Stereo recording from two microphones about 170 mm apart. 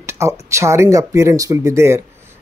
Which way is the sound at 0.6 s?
15° right (ahead or behind).